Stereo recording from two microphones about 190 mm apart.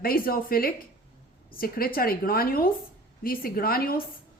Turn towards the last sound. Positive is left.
turn(degrees=50)  # may be behind; listen again after turning